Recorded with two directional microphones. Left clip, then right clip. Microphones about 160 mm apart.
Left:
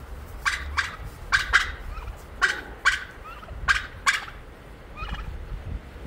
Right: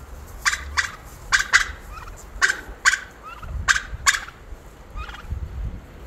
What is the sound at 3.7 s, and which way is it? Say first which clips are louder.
Gobble: right 3 dB; 40° right (ahead or behind).